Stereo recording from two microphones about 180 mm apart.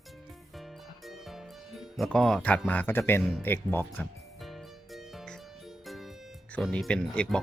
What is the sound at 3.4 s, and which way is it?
Speech, 10° left (ahead or behind).